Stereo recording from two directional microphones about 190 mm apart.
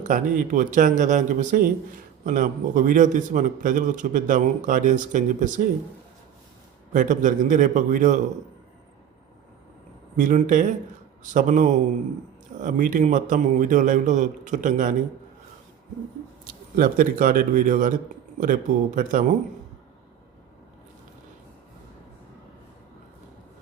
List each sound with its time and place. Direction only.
0.0 s a man's voice: 40° right (ahead or behind)
6.9 s a man's voice: 40° right (ahead or behind)
10.2 s a man's voice: 40° right (ahead or behind)
16.4 s a man's voice: 50° right (ahead or behind)